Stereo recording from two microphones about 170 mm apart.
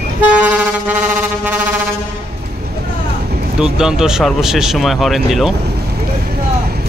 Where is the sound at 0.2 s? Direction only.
10° right (ahead or behind).